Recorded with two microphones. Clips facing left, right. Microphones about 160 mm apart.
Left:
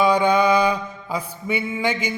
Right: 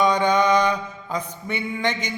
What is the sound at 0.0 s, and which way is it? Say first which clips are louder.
Mantra: left 2 dB; 10° left (ahead or behind).